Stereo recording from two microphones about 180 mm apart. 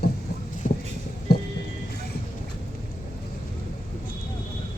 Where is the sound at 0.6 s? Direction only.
45° left (ahead or behind).